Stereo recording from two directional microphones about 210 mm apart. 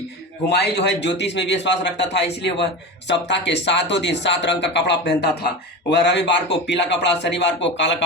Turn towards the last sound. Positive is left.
turn(degrees=55)  # may be behind; listen again after turning